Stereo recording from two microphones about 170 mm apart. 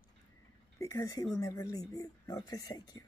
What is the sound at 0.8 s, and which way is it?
Speech, 20° left (ahead or behind).